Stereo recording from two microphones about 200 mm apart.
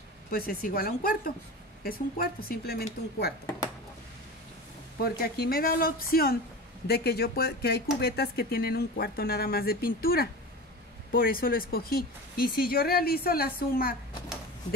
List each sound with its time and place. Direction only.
0.3 s speech: 50° left (ahead or behind)
5.0 s speech: 50° left (ahead or behind)